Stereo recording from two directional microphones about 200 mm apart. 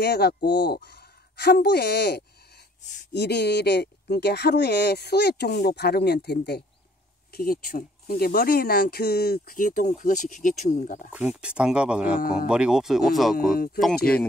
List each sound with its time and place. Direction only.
0.0 s speech: 55° left (ahead or behind); by 11.1 s 40° left (ahead or behind)
11.1 s speech: 5° right (ahead or behind)
13.4 s speech: 45° left (ahead or behind)